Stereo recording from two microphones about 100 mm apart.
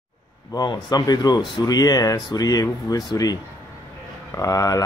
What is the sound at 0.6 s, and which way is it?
Speech, 45° left (ahead or behind).